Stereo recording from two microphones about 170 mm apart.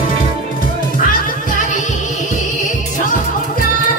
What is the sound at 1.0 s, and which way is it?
Music, 55° left (ahead or behind).